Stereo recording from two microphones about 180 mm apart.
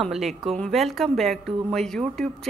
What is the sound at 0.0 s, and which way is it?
Speech, centre (ahead or behind).